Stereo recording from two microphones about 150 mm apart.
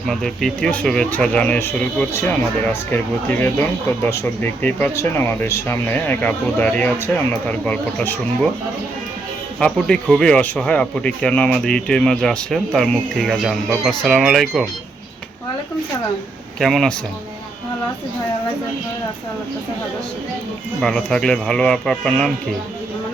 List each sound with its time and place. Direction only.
0.0 s speech: centre (ahead or behind)
9.6 s speech: 5° left (ahead or behind)
16.6 s speech: centre (ahead or behind)
20.8 s speech: 5° left (ahead or behind)